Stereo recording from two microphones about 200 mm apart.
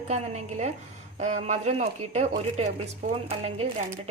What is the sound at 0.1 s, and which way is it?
Speech, 35° right (ahead or behind).